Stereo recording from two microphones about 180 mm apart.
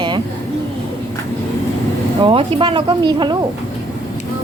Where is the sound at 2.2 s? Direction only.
30° right (ahead or behind).